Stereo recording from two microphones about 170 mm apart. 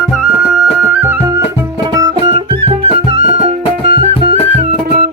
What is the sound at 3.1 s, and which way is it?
Music, 35° right (ahead or behind).